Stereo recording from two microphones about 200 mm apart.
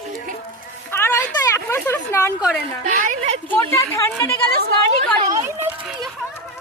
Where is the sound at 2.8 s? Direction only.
40° right (ahead or behind).